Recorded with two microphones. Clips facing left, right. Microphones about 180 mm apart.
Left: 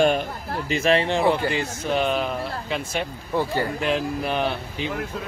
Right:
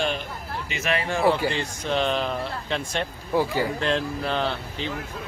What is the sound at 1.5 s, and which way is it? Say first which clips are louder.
Speech: left 2 dB; 10° left (ahead or behind).